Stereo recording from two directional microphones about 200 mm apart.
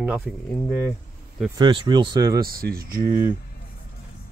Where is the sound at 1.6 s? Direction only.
25° right (ahead or behind).